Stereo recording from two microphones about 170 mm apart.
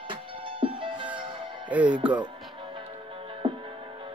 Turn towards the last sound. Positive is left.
turn(degrees=-30)  # may be behind; listen again after turning